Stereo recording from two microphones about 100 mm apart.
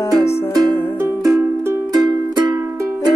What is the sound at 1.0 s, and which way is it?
Music, 25° right (ahead or behind).